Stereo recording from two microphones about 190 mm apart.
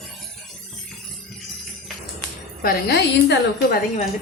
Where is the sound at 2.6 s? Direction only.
55° left (ahead or behind).